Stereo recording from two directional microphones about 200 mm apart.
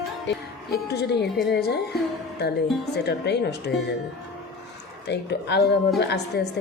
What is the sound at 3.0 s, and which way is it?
Speech, 55° left (ahead or behind).